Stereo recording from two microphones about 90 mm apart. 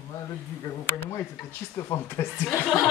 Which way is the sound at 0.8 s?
30° left (ahead or behind).